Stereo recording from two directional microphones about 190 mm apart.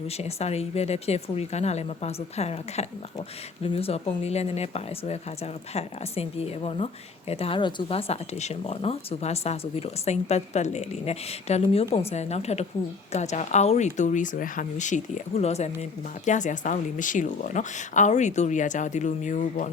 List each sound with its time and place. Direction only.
0.2 s speech: 35° left (ahead or behind)